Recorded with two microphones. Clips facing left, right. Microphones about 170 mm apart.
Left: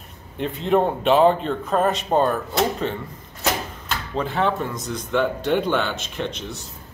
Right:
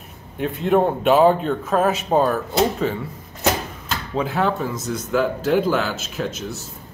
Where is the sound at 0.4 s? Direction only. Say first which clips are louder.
Right 2 dB; 5° right (ahead or behind).